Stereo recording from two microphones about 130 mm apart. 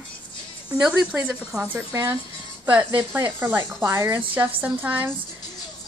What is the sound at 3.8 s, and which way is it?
A woman's voice, 20° right (ahead or behind).